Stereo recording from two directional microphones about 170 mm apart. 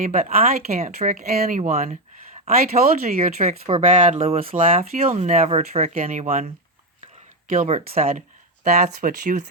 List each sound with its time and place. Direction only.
0.0 s speech: 55° right (ahead or behind)
7.4 s speech: 50° right (ahead or behind)